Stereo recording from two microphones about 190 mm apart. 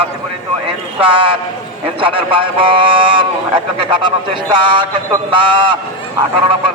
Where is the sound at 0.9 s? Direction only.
25° right (ahead or behind).